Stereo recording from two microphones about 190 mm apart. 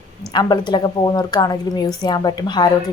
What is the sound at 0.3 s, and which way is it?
A woman's voice, 20° left (ahead or behind).